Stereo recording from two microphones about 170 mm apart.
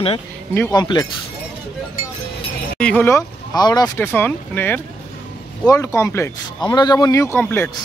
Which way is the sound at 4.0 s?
10° left (ahead or behind).